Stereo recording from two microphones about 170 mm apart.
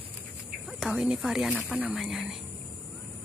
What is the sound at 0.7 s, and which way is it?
Speech, centre (ahead or behind).